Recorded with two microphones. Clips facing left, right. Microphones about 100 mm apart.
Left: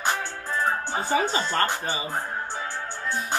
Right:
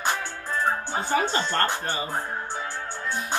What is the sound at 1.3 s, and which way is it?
Speech, 10° left (ahead or behind).